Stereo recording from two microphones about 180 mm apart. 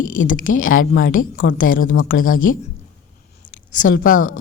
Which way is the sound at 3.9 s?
50° left (ahead or behind).